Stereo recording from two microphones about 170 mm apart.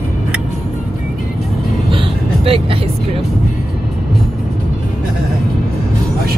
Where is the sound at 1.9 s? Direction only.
30° right (ahead or behind).